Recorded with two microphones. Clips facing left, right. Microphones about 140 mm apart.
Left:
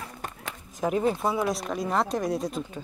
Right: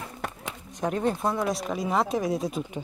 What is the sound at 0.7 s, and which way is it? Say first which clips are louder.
Speech: left 1 dB; 5° left (ahead or behind).